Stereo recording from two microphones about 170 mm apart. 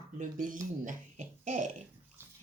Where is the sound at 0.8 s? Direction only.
45° right (ahead or behind).